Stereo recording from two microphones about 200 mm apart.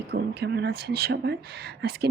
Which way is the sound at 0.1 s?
55° right (ahead or behind).